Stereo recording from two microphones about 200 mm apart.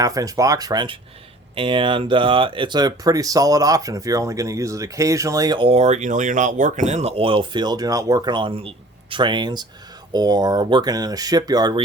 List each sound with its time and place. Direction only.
0.0 s speech: 15° right (ahead or behind)